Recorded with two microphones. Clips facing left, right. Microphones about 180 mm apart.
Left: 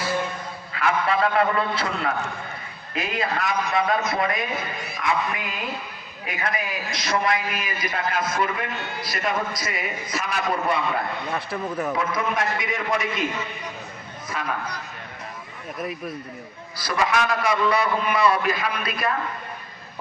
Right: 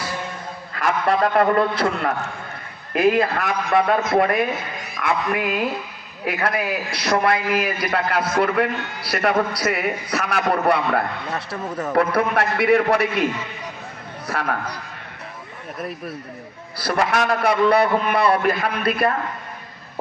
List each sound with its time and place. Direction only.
0.7 s a man's voice: 50° right (ahead or behind); by 13.2 s 65° right (ahead or behind)
14.3 s a man's voice: 60° right (ahead or behind)
15.8 s speech: centre (ahead or behind)
16.7 s a man's voice: 60° right (ahead or behind)